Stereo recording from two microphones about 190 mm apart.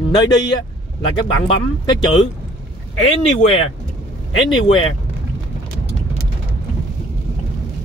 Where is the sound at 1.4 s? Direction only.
25° left (ahead or behind).